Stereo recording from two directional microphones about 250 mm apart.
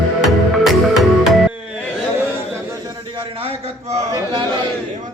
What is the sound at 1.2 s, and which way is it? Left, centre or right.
Music, centre.